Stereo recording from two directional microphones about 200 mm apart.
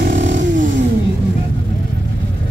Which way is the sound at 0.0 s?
40° right (ahead or behind).